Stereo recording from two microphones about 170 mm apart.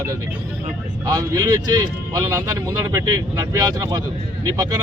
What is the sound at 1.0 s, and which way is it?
Speech, 20° right (ahead or behind).